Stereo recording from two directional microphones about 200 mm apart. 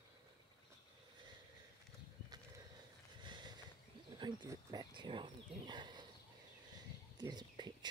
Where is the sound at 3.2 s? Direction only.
20° right (ahead or behind).